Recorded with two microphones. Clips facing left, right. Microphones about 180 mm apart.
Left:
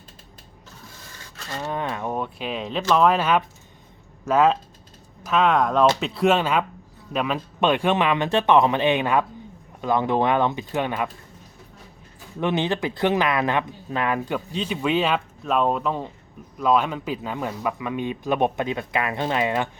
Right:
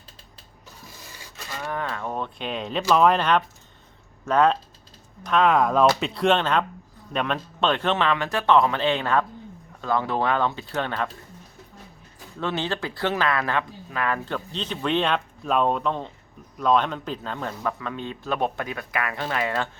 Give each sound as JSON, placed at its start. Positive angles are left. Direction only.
{"t": 1.1, "sound": "a sound", "side_deg": -10}
{"t": 1.6, "sound": "speech", "side_deg": 20}
{"t": 12.4, "sound": "speech", "side_deg": 15}